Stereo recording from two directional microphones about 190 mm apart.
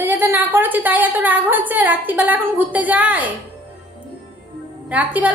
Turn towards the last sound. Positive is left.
turn(degrees=-5)  # may be behind; listen again after turning